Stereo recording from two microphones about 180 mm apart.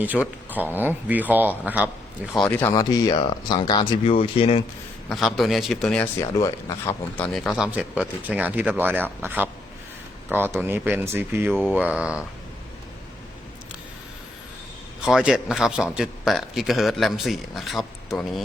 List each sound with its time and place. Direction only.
0.0 s speech: 10° right (ahead or behind)
2.3 s speech: 10° left (ahead or behind)
2.7 s speech: 25° left (ahead or behind)
5.0 s a man's voice: centre (ahead or behind)
6.1 s speech: 20° left (ahead or behind)
7.2 s a man's voice: centre (ahead or behind)
15.0 s a man's voice: 5° right (ahead or behind)